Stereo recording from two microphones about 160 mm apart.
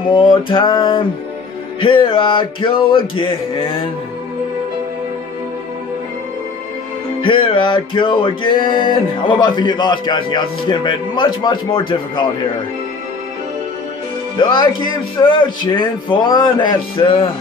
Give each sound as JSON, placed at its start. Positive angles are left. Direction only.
{"t": 0.1, "sound": "speech", "side_deg": 30}
{"t": 1.8, "sound": "music", "side_deg": 30}
{"t": 7.2, "sound": "music", "side_deg": 30}
{"t": 8.9, "sound": "speech", "side_deg": 30}
{"t": 14.3, "sound": "speech", "side_deg": 30}